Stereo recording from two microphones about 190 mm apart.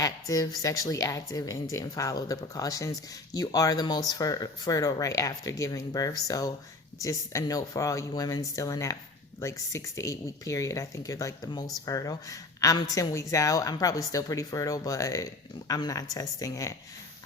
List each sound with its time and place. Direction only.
0.0 s speech: 20° left (ahead or behind)